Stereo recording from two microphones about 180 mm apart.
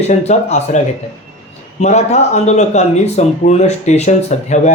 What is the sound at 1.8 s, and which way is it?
Speech, 40° left (ahead or behind).